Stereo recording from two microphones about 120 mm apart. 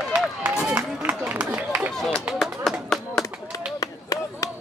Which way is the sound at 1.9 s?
Centre (ahead or behind).